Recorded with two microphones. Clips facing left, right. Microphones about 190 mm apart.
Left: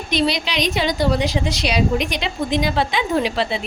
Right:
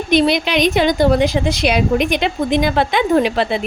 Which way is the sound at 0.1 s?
55° right (ahead or behind).